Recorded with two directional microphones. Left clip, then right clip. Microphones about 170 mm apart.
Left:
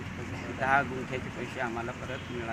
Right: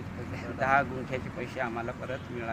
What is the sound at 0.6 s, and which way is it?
Speech, 25° right (ahead or behind).